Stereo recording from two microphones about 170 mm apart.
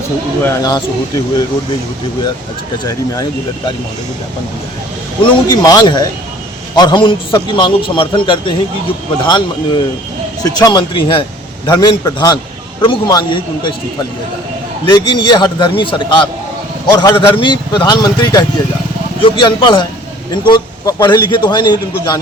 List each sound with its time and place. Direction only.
0.4 s a man's voice: 20° left (ahead or behind)
2.8 s a man's voice: 20° left (ahead or behind)
5.2 s a man's voice: 25° left (ahead or behind)
14.8 s a man's voice: 25° left (ahead or behind)